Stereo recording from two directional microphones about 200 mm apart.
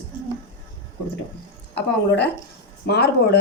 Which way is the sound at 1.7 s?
60° left (ahead or behind).